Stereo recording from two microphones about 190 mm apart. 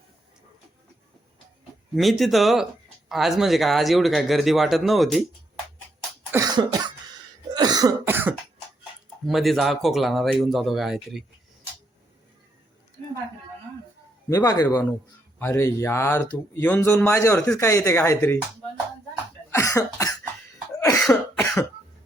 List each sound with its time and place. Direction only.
2.0 s speech: centre (ahead or behind)
6.3 s cough: 20° right (ahead or behind)
9.2 s speech: centre (ahead or behind)
14.3 s a man's voice: 20° left (ahead or behind)
19.5 s cough: 15° left (ahead or behind)